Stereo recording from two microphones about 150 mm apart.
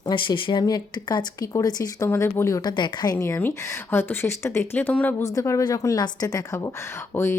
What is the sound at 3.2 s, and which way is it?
Speech, 15° left (ahead or behind).